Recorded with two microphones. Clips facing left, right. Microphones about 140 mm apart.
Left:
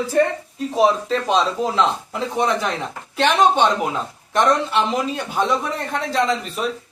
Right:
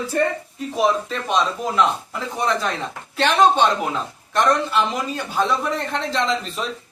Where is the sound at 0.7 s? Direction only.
30° left (ahead or behind); by 6.2 s 10° left (ahead or behind).